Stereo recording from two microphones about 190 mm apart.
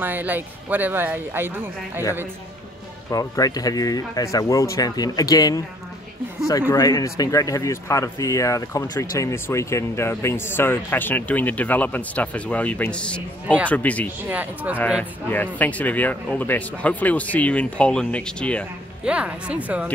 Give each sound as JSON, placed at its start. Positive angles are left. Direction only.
{"t": 0.0, "sound": "speech", "side_deg": -10}
{"t": 3.1, "sound": "speech", "side_deg": 20}
{"t": 6.7, "sound": "speech", "side_deg": 20}
{"t": 14.3, "sound": "speech", "side_deg": -10}
{"t": 15.2, "sound": "speech", "side_deg": 10}
{"t": 19.0, "sound": "speech", "side_deg": -5}